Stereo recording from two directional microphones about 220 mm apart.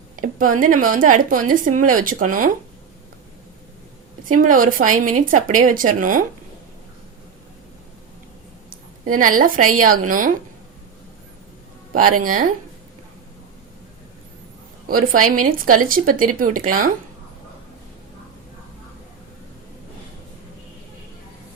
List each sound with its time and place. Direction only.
0.2 s speech: 35° right (ahead or behind)
4.3 s speech: 40° right (ahead or behind)
9.0 s speech: 40° right (ahead or behind)
12.2 s speech: 40° right (ahead or behind)
14.8 s speech: 40° right (ahead or behind)